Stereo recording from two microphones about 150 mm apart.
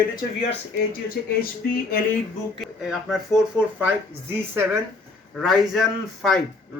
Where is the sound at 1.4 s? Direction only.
85° left.